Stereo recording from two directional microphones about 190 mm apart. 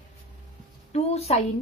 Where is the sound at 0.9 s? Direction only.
35° left (ahead or behind).